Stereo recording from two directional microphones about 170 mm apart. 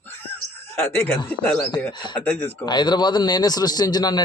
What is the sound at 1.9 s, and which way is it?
A man's voice, 25° left (ahead or behind).